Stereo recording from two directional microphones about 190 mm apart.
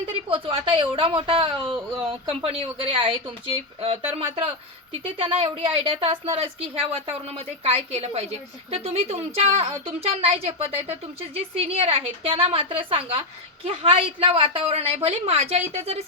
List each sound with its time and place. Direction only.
0.3 s a woman's voice: 30° right (ahead or behind)
4.4 s a woman's voice: 30° right (ahead or behind)